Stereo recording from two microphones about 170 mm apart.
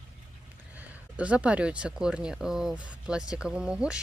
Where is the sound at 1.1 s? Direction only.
10° right (ahead or behind).